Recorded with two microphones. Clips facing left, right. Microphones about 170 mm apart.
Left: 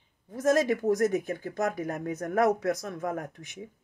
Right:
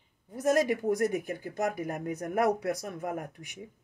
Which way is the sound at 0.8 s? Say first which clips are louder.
Left 3 dB; 40° left (ahead or behind).